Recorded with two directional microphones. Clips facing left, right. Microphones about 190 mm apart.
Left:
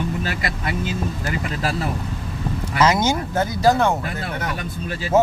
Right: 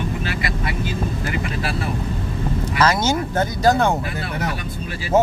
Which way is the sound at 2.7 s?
20° left (ahead or behind).